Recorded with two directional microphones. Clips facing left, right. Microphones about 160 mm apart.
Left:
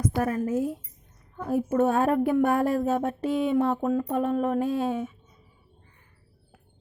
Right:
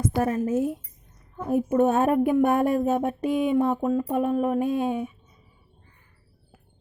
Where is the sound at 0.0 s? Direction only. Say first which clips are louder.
Right 2 dB; 25° right (ahead or behind).